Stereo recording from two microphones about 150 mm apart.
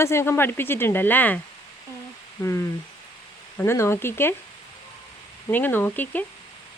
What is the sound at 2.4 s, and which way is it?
Speech, 20° left (ahead or behind).